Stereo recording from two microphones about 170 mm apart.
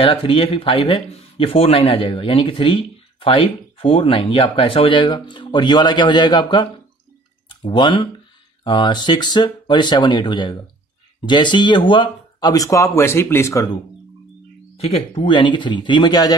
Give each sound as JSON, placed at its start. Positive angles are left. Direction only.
{"t": 0.0, "sound": "speech", "side_deg": 30}
{"t": 14.8, "sound": "speech", "side_deg": 30}